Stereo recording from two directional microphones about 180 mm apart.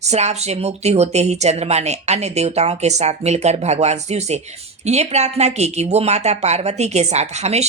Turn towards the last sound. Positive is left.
turn(degrees=-40)  # may be behind; listen again after turning